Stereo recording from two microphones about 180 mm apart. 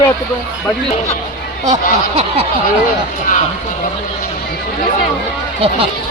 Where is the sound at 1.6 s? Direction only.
40° right (ahead or behind).